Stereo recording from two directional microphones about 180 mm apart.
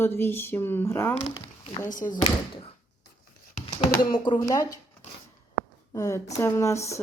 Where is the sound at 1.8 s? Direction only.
45° left (ahead or behind).